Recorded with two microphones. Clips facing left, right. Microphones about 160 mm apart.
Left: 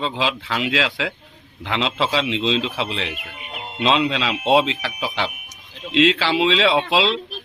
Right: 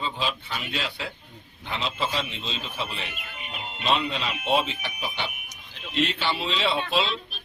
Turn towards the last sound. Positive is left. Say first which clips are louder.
# left 7 dB
turn(degrees=90)